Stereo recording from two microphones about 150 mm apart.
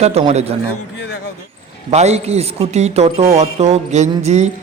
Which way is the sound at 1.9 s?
45° right (ahead or behind).